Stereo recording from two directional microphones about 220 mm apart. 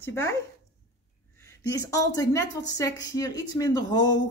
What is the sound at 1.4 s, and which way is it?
A woman's voice, 15° left (ahead or behind).